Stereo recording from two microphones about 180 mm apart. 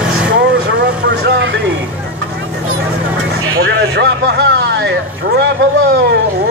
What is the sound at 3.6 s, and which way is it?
Vehicle, 70° right (ahead or behind).